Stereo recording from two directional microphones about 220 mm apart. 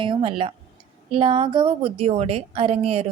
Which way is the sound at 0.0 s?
20° right (ahead or behind).